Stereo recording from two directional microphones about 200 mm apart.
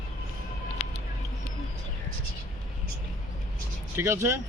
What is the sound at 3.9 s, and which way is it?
Speech, 10° right (ahead or behind).